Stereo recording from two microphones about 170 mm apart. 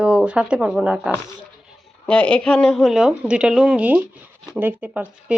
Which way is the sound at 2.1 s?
5° left (ahead or behind).